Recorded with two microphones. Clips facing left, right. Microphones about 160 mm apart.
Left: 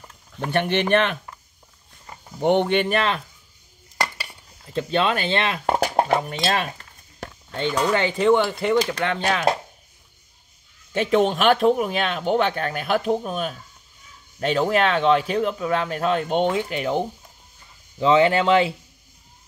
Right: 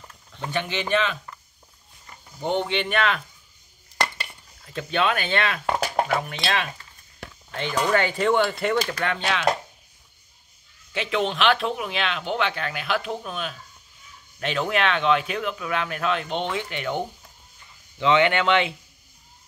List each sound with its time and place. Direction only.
0.5 s speech: 60° left (ahead or behind)
2.4 s speech: 60° left (ahead or behind); by 3.2 s 35° left (ahead or behind)
4.7 s speech: 30° left (ahead or behind)
7.9 s speech: 20° left (ahead or behind)
9.2 s speech: 40° left (ahead or behind)
10.9 s speech: 45° left (ahead or behind)